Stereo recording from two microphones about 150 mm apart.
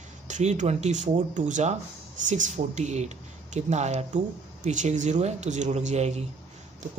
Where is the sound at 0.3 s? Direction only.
50° right (ahead or behind).